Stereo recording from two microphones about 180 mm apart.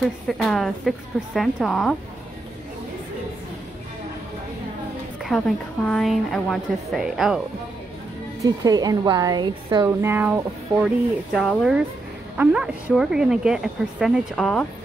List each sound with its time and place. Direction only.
0.3 s speech: centre (ahead or behind)
5.3 s speech: centre (ahead or behind)
8.5 s a woman's voice: 20° right (ahead or behind); by 14.7 s centre (ahead or behind)